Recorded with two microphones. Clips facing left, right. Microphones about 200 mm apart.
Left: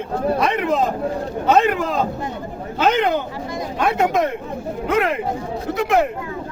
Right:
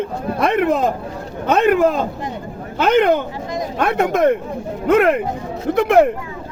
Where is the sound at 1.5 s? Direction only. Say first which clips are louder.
Right 3 dB; 60° right (ahead or behind).